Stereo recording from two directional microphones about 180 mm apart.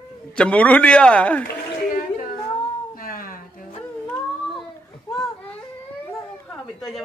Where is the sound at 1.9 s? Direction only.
50° left (ahead or behind).